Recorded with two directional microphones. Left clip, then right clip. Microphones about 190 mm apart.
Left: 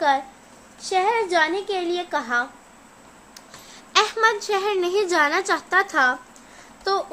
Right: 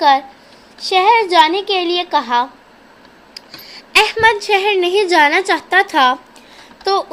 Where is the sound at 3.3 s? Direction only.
15° right (ahead or behind).